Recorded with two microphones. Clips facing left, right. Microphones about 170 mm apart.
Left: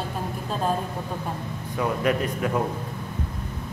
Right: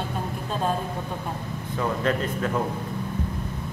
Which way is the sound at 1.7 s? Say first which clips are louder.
Left 1 dB; 10° left (ahead or behind).